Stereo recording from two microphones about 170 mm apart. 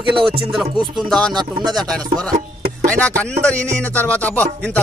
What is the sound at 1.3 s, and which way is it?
Speech, 25° right (ahead or behind).